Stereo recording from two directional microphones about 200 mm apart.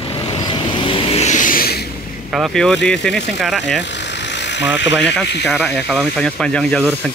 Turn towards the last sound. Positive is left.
turn(degrees=5)  # may be behind; listen again after turning